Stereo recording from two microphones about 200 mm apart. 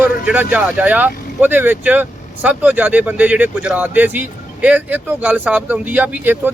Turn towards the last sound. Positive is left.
turn(degrees=-10)  # may be behind; listen again after turning